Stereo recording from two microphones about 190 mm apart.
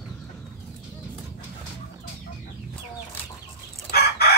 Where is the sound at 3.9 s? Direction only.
55° left (ahead or behind).